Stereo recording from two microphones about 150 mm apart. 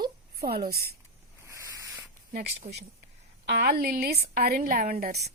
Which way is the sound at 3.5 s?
90° right.